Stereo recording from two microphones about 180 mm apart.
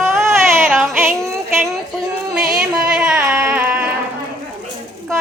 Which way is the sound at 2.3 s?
5° right (ahead or behind).